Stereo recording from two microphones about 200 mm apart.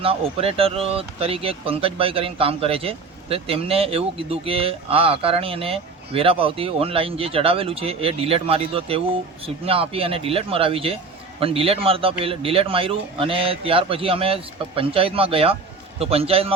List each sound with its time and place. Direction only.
0.0 s speech: 30° right (ahead or behind)